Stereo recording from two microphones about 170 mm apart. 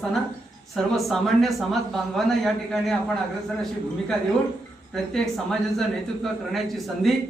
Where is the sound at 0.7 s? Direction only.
Centre (ahead or behind).